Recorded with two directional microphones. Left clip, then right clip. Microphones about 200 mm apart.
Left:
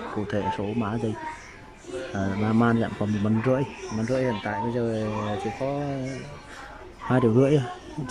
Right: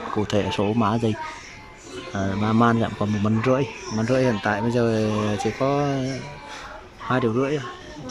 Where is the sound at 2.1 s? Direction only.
Centre (ahead or behind).